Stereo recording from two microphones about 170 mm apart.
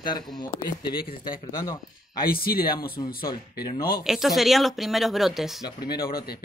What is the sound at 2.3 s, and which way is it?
Speech, 60° left (ahead or behind).